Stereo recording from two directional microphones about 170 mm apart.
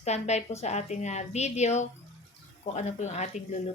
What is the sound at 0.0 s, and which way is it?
Speech, 40° left (ahead or behind).